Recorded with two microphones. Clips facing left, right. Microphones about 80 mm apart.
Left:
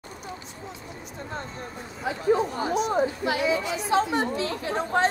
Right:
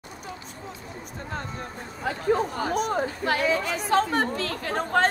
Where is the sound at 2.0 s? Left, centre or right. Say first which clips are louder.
Left 1 dB; right.